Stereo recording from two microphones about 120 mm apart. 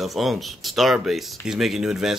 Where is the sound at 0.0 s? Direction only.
Centre (ahead or behind).